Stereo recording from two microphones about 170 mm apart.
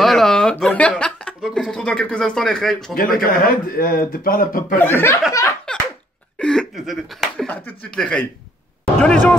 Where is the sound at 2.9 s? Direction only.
60° left (ahead or behind).